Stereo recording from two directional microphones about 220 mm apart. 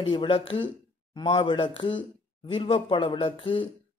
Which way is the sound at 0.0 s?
25° left (ahead or behind).